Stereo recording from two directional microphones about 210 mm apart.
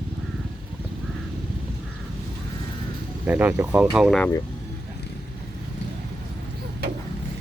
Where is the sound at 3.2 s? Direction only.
10° right (ahead or behind).